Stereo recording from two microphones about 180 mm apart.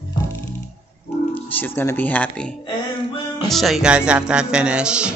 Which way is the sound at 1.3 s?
10° left (ahead or behind).